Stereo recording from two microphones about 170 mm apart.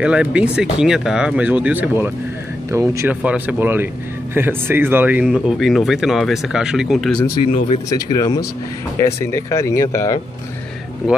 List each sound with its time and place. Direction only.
0.0 s speech: 5° right (ahead or behind)
7.5 s speech: 40° left (ahead or behind)
7.9 s speech: 20° left (ahead or behind)